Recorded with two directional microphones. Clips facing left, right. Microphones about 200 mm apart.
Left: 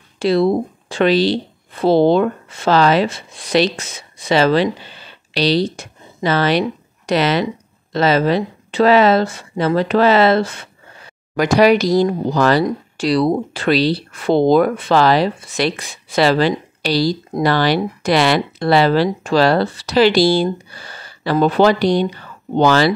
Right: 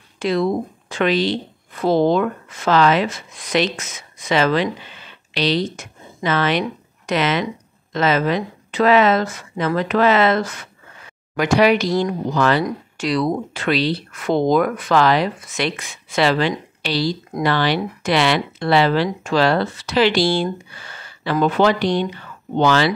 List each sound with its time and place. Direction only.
0.2 s speech: 35° left (ahead or behind)